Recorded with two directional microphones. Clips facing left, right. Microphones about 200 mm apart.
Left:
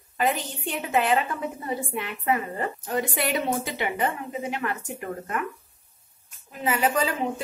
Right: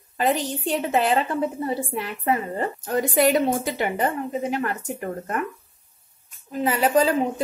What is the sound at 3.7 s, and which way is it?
Speech, 40° right (ahead or behind).